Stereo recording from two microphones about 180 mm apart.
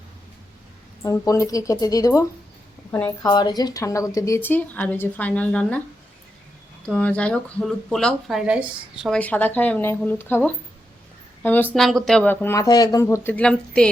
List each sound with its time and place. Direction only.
1.0 s speech: 20° left (ahead or behind)
3.2 s speech: 25° left (ahead or behind); by 5.8 s 5° left (ahead or behind)
6.8 s speech: 5° left (ahead or behind)